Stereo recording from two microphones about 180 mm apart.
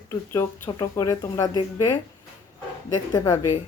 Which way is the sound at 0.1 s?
15° left (ahead or behind).